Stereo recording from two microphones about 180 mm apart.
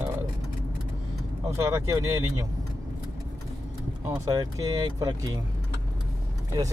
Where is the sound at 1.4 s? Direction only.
15° right (ahead or behind).